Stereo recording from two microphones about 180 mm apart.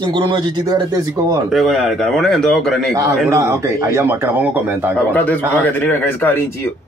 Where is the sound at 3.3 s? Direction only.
15° right (ahead or behind).